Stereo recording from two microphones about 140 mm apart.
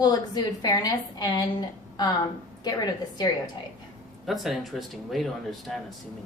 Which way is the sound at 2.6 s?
30° left (ahead or behind).